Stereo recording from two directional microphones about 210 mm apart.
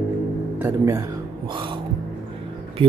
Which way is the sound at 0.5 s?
10° right (ahead or behind).